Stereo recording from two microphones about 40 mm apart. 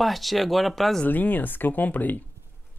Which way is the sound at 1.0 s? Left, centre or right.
Left.